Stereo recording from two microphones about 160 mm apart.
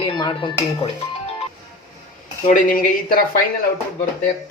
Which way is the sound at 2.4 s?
55° left (ahead or behind).